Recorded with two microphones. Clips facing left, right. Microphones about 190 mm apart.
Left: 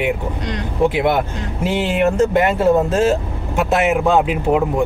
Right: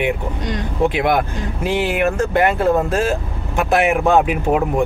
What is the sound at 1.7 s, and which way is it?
Speech, 25° left (ahead or behind).